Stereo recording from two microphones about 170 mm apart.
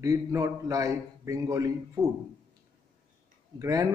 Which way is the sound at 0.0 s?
20° right (ahead or behind).